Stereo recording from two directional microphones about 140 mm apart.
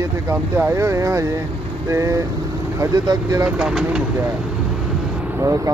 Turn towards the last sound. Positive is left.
turn(degrees=-20)  # may be behind; listen again after turning